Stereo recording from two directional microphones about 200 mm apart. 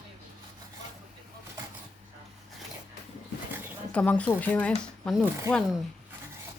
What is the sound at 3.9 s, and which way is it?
Speech, 5° left (ahead or behind).